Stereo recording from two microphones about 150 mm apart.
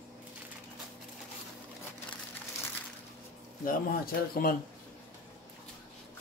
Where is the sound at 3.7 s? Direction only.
80° left.